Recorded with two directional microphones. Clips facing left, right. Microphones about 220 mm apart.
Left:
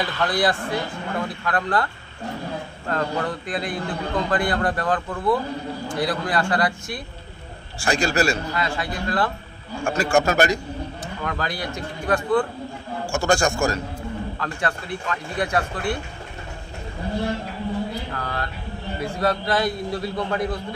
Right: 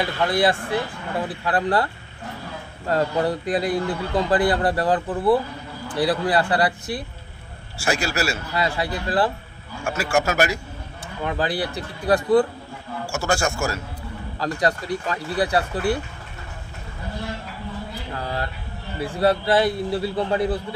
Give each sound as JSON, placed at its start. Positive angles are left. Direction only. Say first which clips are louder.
{"t": 0.3, "sound": "a man's voice", "louder": "right 2 dB", "side_deg": -25}
{"t": 2.9, "sound": "a man's voice", "louder": "right 4 dB", "side_deg": -35}
{"t": 7.8, "sound": "a man's voice", "louder": "left 3 dB", "side_deg": -5}
{"t": 8.5, "sound": "a man's voice", "louder": "right 2 dB", "side_deg": -35}
{"t": 9.8, "sound": "a man's voice", "louder": "left 2 dB", "side_deg": -5}
{"t": 11.2, "sound": "a man's voice", "louder": "right 5 dB", "side_deg": -30}
{"t": 13.1, "sound": "a man's voice", "louder": "left 3 dB", "side_deg": -5}
{"t": 14.4, "sound": "a man's voice", "louder": "right 8 dB", "side_deg": -35}
{"t": 18.1, "sound": "a man's voice", "louder": "right 1 dB", "side_deg": -30}